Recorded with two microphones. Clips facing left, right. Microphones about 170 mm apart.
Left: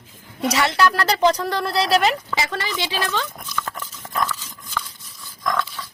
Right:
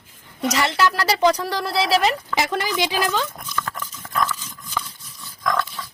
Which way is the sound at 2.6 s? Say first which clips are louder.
Right 3 dB; 15° right (ahead or behind).